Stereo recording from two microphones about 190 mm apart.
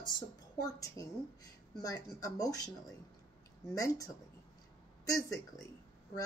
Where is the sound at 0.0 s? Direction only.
20° left (ahead or behind).